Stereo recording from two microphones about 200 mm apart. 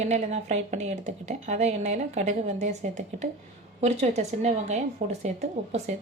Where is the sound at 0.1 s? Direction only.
35° right (ahead or behind).